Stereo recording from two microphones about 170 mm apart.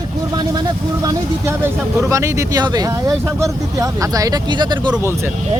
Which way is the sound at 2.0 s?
15° right (ahead or behind).